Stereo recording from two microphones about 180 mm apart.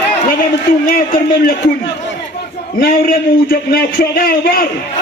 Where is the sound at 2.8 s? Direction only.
55° left (ahead or behind).